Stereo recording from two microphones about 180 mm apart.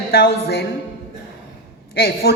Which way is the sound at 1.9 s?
60° left (ahead or behind).